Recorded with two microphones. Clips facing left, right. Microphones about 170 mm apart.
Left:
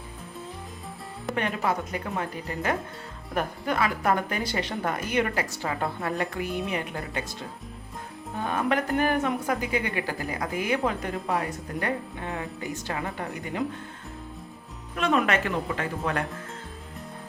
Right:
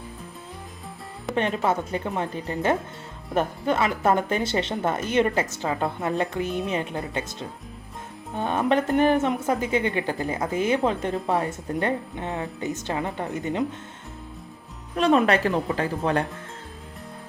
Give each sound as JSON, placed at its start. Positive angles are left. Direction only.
{"t": 1.4, "sound": "a woman's voice", "side_deg": -25}
{"t": 14.9, "sound": "a woman's voice", "side_deg": -35}